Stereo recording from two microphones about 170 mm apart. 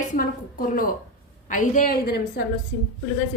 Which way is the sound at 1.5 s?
55° left (ahead or behind).